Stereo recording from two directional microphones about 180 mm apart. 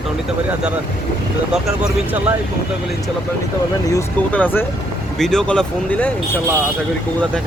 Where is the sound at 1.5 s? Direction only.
5° right (ahead or behind).